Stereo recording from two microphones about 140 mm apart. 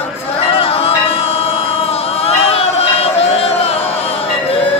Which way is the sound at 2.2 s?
45° left (ahead or behind).